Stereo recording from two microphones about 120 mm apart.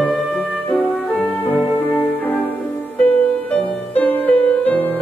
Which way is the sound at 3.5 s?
15° left (ahead or behind).